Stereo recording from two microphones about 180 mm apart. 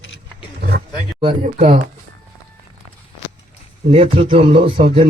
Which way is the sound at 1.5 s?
35° right (ahead or behind).